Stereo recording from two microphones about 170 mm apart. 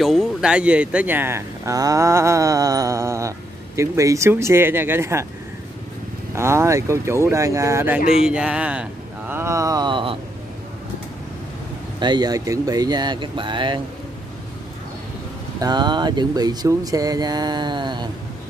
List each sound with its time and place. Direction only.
0.0 s speech: centre (ahead or behind)
6.3 s speech: 15° right (ahead or behind)
12.0 s speech: 25° right (ahead or behind)
15.6 s speech: 25° right (ahead or behind)